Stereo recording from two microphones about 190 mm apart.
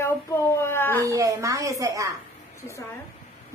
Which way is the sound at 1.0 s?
15° right (ahead or behind).